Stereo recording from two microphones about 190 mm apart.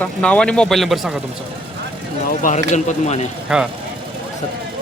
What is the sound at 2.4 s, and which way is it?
Speech, 40° left (ahead or behind).